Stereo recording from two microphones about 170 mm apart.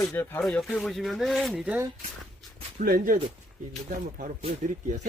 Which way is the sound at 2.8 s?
60° right (ahead or behind).